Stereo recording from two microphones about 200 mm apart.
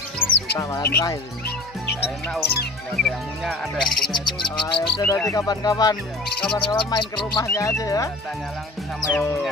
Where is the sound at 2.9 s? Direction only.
Centre (ahead or behind).